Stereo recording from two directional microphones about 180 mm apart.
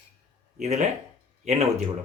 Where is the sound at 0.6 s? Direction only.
40° right (ahead or behind).